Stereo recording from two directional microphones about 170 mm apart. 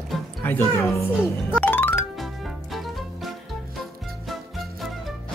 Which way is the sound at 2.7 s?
Centre (ahead or behind).